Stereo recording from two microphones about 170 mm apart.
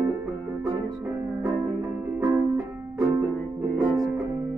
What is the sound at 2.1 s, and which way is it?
Music, 15° right (ahead or behind).